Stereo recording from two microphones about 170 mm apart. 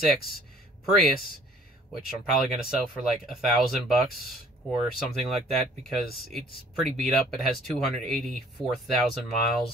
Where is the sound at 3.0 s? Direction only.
Centre (ahead or behind).